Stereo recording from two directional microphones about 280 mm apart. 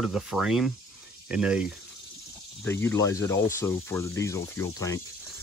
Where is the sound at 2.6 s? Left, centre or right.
Centre.